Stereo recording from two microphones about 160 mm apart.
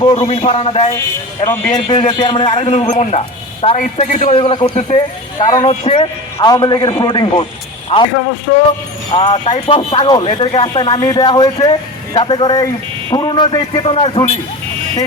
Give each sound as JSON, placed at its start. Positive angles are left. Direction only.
{"t": 0.0, "sound": "a man's voice", "side_deg": 30}
{"t": 1.9, "sound": "a man's voice", "side_deg": 30}
{"t": 4.4, "sound": "a man's voice", "side_deg": 35}
{"t": 8.1, "sound": "speech", "side_deg": 80}
{"t": 9.1, "sound": "speech", "side_deg": 35}